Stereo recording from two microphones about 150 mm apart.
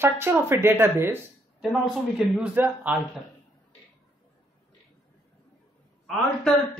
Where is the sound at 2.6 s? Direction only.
10° right (ahead or behind).